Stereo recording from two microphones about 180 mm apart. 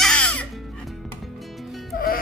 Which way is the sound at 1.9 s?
55° left (ahead or behind).